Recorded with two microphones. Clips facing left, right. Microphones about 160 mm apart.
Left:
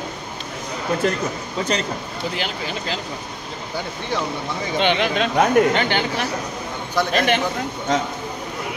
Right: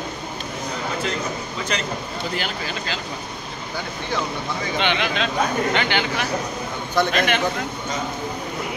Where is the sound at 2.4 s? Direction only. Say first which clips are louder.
Left 1 dB; 20° left (ahead or behind).